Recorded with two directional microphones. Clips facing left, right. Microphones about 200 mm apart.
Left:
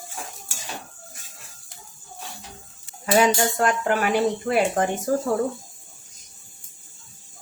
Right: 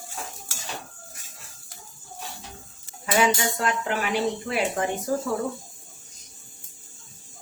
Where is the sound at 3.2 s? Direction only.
40° left (ahead or behind).